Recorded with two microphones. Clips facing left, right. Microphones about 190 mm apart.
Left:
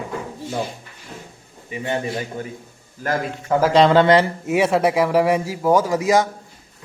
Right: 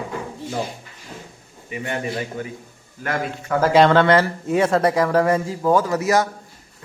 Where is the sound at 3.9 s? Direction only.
20° left (ahead or behind).